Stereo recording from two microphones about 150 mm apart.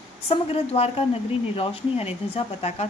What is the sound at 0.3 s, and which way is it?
A woman's voice, 45° left (ahead or behind).